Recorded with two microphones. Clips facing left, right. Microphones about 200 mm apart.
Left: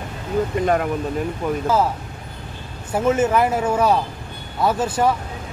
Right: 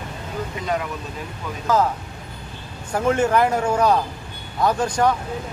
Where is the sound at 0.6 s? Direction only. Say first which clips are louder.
Left 5 dB; 50° left (ahead or behind).